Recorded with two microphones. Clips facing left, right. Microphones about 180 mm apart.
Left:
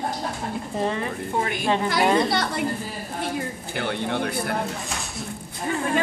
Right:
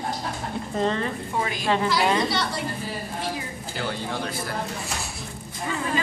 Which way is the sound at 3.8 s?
60° left (ahead or behind).